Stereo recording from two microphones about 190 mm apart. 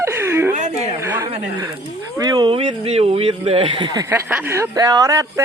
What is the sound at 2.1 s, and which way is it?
Speech, 20° right (ahead or behind).